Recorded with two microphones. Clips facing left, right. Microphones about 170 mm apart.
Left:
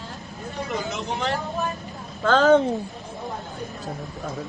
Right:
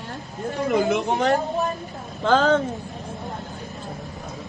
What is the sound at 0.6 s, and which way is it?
Speech, 55° right (ahead or behind).